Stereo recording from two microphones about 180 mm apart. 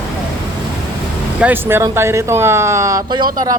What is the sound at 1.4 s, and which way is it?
A man's voice, 10° right (ahead or behind).